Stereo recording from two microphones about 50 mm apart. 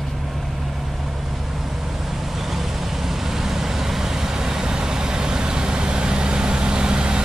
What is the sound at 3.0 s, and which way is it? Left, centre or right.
Vehicle, centre.